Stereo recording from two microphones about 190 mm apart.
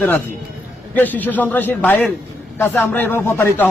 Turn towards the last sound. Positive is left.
turn(degrees=15)  # may be behind; listen again after turning